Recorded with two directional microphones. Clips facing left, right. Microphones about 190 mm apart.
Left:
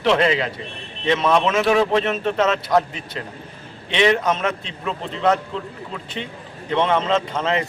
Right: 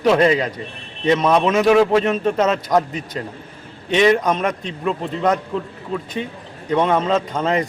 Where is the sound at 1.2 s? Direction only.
10° right (ahead or behind).